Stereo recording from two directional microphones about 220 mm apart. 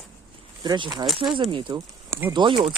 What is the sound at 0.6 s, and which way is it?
Speech, 20° right (ahead or behind).